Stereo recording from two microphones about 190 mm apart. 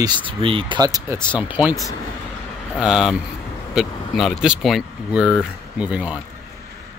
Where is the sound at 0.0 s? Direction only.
25° right (ahead or behind).